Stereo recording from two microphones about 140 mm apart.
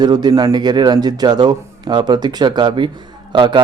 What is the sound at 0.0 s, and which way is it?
Speech, 30° right (ahead or behind).